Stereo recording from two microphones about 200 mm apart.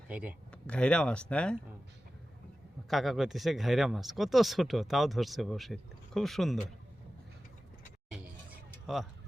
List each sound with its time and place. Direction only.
0.1 s speech: 5° right (ahead or behind)
0.5 s speech: 5° left (ahead or behind)
2.9 s speech: centre (ahead or behind)